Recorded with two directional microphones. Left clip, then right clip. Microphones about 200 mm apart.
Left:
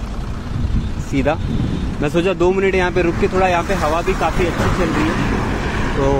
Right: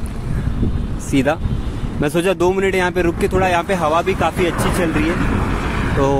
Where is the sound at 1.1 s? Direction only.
15° right (ahead or behind).